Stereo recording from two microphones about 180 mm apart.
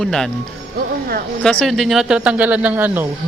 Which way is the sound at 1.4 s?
5° left (ahead or behind).